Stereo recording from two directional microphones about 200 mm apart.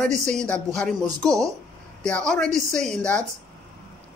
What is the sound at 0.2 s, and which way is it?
Speech, 5° left (ahead or behind).